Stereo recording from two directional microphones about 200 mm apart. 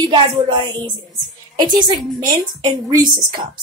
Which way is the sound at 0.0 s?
25° right (ahead or behind).